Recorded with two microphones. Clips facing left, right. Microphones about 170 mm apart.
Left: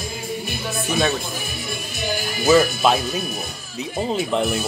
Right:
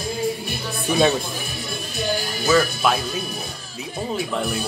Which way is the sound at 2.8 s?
20° left (ahead or behind).